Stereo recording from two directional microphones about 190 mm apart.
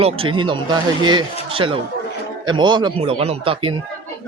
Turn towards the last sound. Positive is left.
turn(degrees=-25)  # may be behind; listen again after turning